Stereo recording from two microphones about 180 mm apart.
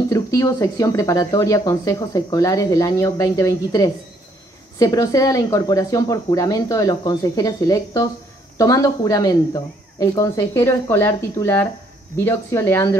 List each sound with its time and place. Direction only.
0.1 s speech: 15° left (ahead or behind)